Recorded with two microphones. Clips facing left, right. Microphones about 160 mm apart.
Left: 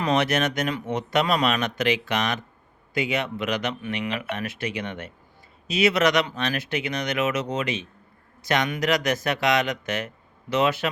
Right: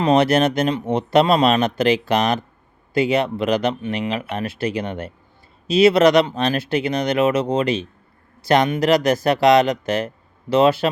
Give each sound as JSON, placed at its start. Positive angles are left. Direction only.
{"t": 0.0, "sound": "speech", "side_deg": -30}